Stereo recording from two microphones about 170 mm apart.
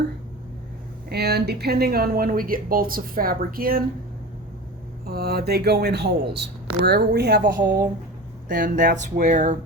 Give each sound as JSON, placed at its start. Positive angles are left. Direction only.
{"t": 1.1, "sound": "speech", "side_deg": -70}
{"t": 5.0, "sound": "speech", "side_deg": -65}
{"t": 8.4, "sound": "speech", "side_deg": -50}